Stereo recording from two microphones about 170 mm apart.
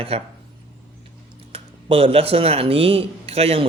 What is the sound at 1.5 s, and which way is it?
Speech, 35° right (ahead or behind).